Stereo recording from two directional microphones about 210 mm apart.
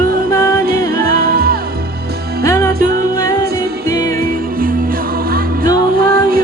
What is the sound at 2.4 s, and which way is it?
Music, 15° left (ahead or behind).